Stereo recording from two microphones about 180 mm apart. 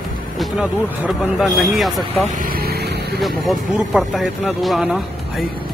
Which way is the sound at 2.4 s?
55° right (ahead or behind).